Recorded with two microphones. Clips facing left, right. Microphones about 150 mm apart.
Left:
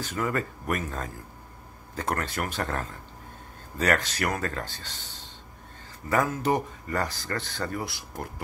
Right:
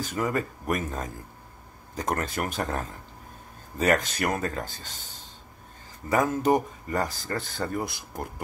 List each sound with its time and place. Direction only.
0.1 s speech: 15° right (ahead or behind)
6.0 s speech: 20° right (ahead or behind)